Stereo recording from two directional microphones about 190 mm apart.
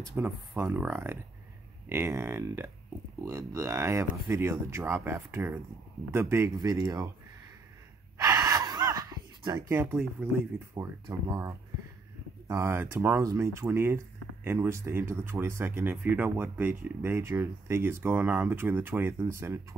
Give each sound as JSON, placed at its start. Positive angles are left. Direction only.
{"t": 0.0, "sound": "speech", "side_deg": -10}
{"t": 8.2, "sound": "gasp", "side_deg": -20}
{"t": 10.2, "sound": "speech", "side_deg": -10}